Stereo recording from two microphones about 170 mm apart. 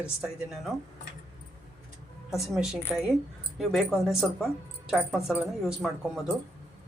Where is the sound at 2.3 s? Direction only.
5° right (ahead or behind).